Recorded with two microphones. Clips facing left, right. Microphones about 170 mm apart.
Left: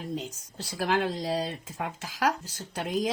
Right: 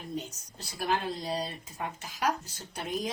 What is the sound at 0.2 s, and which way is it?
Speech, 90° left.